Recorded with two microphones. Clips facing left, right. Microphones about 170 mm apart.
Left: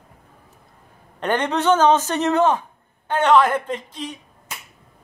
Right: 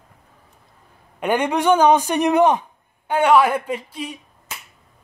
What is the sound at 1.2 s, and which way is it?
Speech, 10° right (ahead or behind).